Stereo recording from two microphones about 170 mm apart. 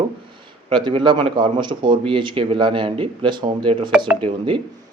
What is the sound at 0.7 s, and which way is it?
Speech, 30° right (ahead or behind).